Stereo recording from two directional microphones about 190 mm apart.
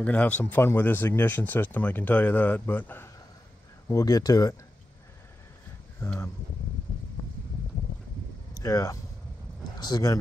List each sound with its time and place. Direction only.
0.0 s speech: 5° left (ahead or behind)
5.9 s speech: 15° left (ahead or behind)
8.5 s speech: 15° left (ahead or behind)